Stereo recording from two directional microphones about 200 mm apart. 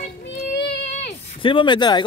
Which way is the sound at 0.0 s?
35° left (ahead or behind).